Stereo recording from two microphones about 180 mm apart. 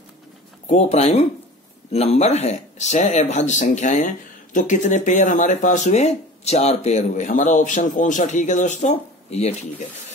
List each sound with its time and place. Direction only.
0.7 s speech: 40° left (ahead or behind)